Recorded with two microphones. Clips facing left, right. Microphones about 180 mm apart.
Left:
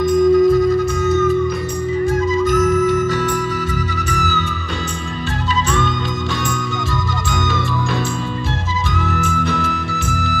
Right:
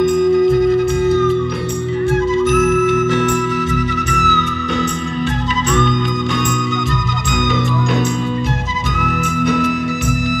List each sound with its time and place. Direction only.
0.0 s music: 25° right (ahead or behind)
9.0 s music: 15° right (ahead or behind)